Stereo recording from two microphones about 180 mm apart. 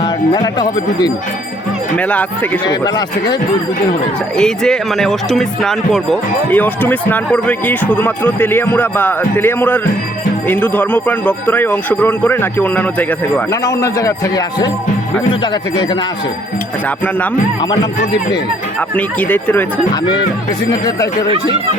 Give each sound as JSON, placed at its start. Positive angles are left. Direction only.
{"t": 0.0, "sound": "speech", "side_deg": 25}
{"t": 2.0, "sound": "speech", "side_deg": 10}
{"t": 2.6, "sound": "speech", "side_deg": 25}
{"t": 4.4, "sound": "speech", "side_deg": 5}
{"t": 18.9, "sound": "speech", "side_deg": 10}
{"t": 20.7, "sound": "speech", "side_deg": 20}